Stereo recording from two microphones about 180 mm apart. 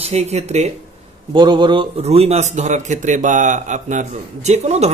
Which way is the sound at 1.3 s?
25° right (ahead or behind).